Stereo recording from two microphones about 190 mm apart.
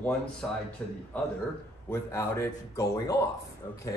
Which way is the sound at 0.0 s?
5° left (ahead or behind).